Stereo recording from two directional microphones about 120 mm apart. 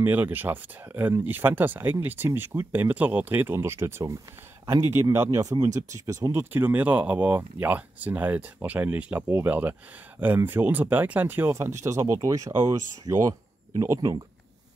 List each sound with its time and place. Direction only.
0.0 s speech: 15° right (ahead or behind)